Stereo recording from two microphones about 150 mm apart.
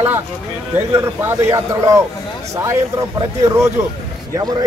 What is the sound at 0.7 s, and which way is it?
A man's voice, 15° right (ahead or behind).